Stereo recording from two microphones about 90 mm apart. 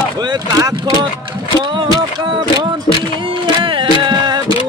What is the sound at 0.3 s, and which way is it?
Speech, 40° right (ahead or behind).